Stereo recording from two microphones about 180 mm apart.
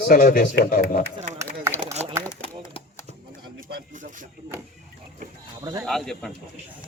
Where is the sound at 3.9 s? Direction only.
45° right (ahead or behind).